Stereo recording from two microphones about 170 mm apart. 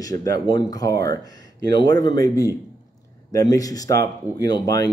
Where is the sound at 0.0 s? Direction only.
20° left (ahead or behind).